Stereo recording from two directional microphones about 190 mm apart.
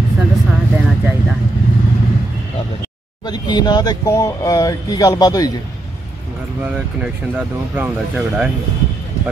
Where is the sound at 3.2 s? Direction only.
20° left (ahead or behind).